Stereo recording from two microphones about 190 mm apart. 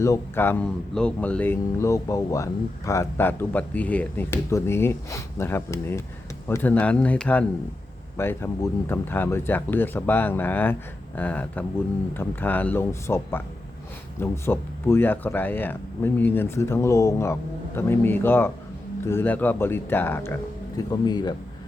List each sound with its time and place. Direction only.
0.0 s speech: 15° left (ahead or behind)